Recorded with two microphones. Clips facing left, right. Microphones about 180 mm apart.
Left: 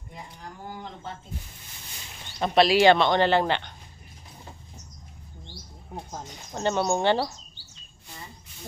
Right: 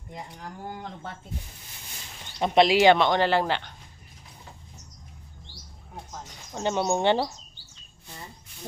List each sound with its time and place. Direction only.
2.3 s speech: 20° right (ahead or behind)
6.5 s speech: 10° right (ahead or behind)